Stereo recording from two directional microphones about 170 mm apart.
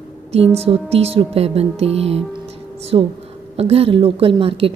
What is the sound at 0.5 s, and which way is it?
A woman's voice, 35° right (ahead or behind).